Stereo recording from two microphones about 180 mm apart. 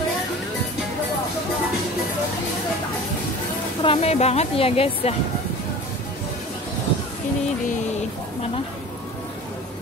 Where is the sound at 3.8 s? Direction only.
30° left (ahead or behind).